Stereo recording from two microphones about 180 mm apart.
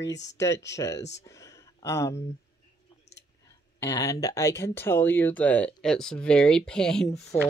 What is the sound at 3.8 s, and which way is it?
Speech, 20° left (ahead or behind).